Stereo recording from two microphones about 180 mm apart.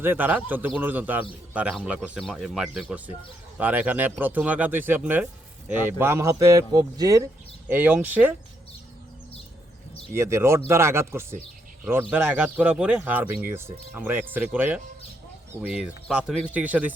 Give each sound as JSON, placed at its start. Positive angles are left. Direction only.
{"t": 0.0, "sound": "speech", "side_deg": -10}
{"t": 10.2, "sound": "speech", "side_deg": -15}